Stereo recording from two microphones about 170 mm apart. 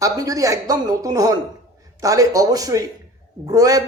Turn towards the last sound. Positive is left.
turn(degrees=-20)  # may be behind; listen again after turning